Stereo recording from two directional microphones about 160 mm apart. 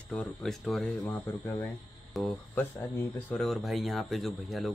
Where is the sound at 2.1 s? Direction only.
Centre (ahead or behind).